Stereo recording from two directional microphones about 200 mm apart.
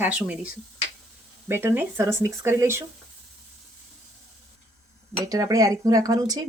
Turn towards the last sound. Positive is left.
turn(degrees=-20)  # may be behind; listen again after turning